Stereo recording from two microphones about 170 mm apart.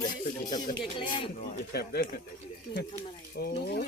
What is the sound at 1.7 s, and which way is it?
Speech, 65° left (ahead or behind).